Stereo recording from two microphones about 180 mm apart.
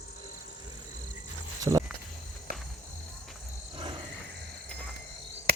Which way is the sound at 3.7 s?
30° right (ahead or behind).